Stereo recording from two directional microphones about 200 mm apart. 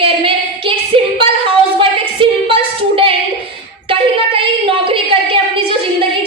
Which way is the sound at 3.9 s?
25° right (ahead or behind).